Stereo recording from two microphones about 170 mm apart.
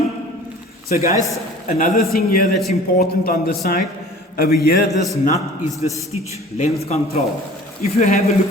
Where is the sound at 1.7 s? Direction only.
50° left (ahead or behind).